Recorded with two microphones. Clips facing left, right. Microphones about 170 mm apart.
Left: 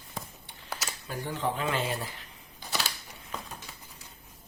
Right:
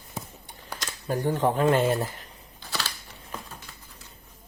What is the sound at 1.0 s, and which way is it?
Speech, 45° right (ahead or behind).